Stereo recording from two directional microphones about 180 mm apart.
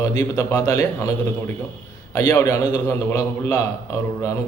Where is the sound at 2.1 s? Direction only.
20° left (ahead or behind).